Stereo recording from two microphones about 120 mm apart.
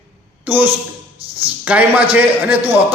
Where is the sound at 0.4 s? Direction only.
15° right (ahead or behind).